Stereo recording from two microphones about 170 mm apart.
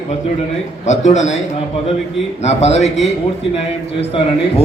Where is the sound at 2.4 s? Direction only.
40° left (ahead or behind).